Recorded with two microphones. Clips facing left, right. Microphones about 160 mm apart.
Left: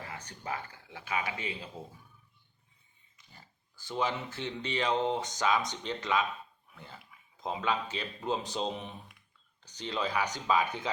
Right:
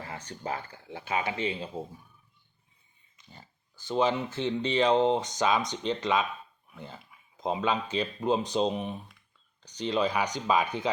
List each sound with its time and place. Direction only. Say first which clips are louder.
0.3 s speech: right 4 dB; 30° right (ahead or behind)
3.2 s speech: right 5 dB; 20° right (ahead or behind)